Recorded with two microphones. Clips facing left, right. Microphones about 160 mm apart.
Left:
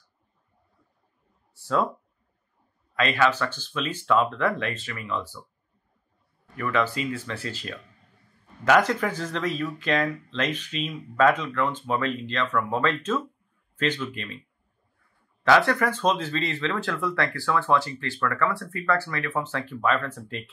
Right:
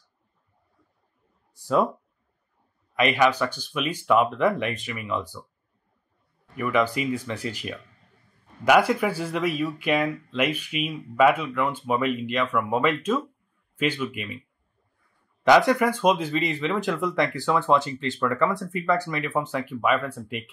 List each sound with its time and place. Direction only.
1.5 s speech: 15° right (ahead or behind)
2.9 s speech: 15° right (ahead or behind)
6.5 s speech: 15° right (ahead or behind)
15.4 s speech: 15° right (ahead or behind)